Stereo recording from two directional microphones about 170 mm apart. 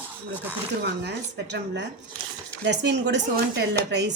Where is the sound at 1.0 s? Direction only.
90° right.